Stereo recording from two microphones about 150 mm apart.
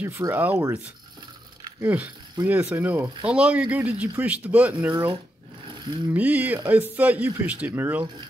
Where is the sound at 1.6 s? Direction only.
15° right (ahead or behind).